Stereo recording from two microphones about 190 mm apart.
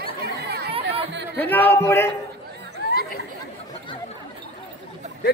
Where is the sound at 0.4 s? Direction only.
55° right (ahead or behind).